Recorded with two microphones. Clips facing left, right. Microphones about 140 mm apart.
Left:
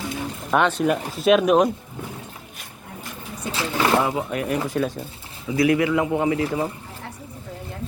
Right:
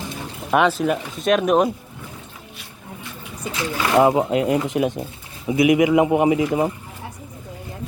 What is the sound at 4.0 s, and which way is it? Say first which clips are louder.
Speech: right 7 dB; 25° right (ahead or behind).